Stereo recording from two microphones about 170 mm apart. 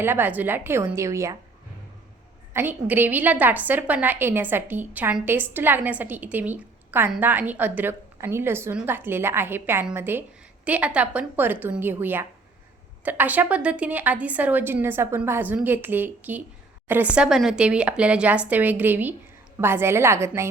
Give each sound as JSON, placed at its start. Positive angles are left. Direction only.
{"t": 0.0, "sound": "a woman's voice", "side_deg": -10}
{"t": 2.5, "sound": "a woman's voice", "side_deg": -10}